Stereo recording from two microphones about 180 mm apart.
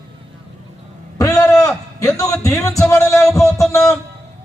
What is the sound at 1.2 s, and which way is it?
A man's voice, 20° left (ahead or behind).